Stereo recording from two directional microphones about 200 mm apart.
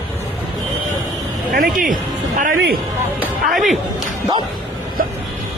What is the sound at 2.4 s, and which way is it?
Speech, 45° right (ahead or behind).